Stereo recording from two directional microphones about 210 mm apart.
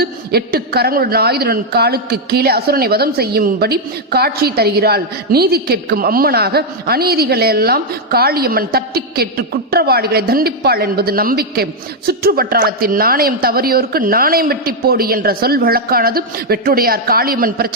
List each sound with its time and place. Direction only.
0.0 s a man's voice: 50° right (ahead or behind)